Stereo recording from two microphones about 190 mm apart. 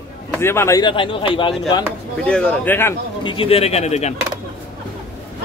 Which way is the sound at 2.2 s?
5° left (ahead or behind).